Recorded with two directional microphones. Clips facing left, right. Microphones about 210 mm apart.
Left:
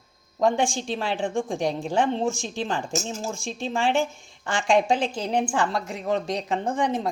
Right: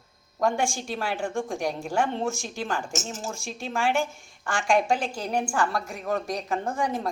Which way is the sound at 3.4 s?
25° left (ahead or behind).